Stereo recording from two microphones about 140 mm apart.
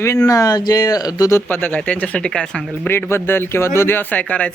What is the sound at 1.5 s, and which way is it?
Speech, 15° left (ahead or behind).